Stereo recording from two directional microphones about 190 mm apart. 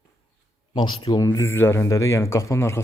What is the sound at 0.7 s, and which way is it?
Speech, 25° left (ahead or behind).